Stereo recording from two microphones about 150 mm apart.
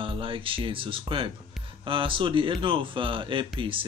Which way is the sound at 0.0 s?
35° right (ahead or behind).